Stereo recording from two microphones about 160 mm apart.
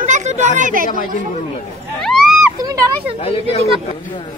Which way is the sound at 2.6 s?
25° right (ahead or behind).